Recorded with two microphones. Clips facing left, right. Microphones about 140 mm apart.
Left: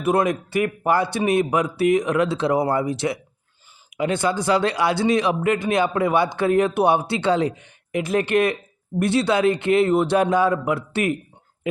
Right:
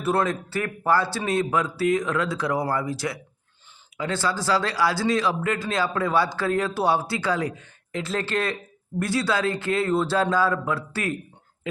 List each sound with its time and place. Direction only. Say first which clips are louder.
0.0 s a man's voice: left 4 dB; 15° left (ahead or behind)